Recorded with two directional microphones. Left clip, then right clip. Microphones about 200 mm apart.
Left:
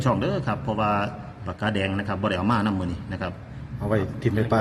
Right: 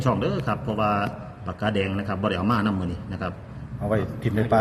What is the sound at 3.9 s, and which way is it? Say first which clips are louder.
Speech: left 1 dB; 40° left (ahead or behind).